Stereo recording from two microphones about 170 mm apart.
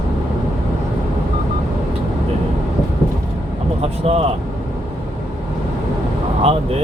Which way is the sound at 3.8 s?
35° right (ahead or behind).